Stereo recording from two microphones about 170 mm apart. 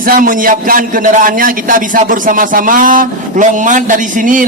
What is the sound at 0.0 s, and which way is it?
A man's voice, 55° right (ahead or behind).